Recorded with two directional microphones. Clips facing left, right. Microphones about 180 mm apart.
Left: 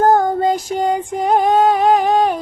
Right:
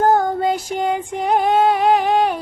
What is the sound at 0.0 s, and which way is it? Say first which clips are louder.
Female singing: left 2 dB; 45° left (ahead or behind).